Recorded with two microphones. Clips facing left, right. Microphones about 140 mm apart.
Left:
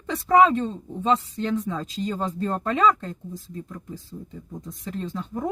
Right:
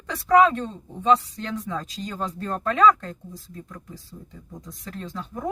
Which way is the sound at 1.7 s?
25° left (ahead or behind).